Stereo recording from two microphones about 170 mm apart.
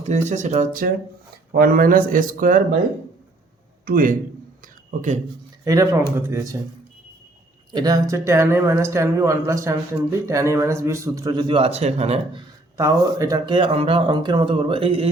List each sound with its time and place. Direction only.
0.0 s a man's voice: 45° right (ahead or behind)
3.8 s a man's voice: 55° right (ahead or behind)
5.6 s speech: 20° right (ahead or behind)
7.7 s speech: 25° right (ahead or behind)
12.7 s speech: 20° right (ahead or behind)